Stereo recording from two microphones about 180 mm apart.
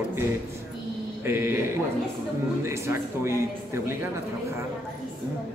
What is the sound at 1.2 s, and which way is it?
Speech, 10° right (ahead or behind).